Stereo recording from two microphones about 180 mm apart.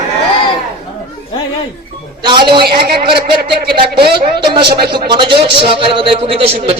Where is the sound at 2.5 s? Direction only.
60° right (ahead or behind).